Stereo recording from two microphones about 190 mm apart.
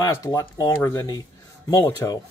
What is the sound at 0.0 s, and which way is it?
Speech, 15° left (ahead or behind).